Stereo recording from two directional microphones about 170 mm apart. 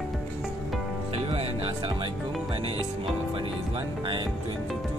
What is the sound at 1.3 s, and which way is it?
Music, 35° right (ahead or behind).